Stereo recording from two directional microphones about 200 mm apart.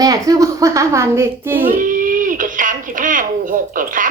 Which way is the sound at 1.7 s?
40° right (ahead or behind).